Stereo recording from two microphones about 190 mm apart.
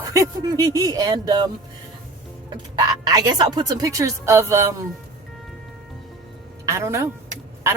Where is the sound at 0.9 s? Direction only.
20° right (ahead or behind).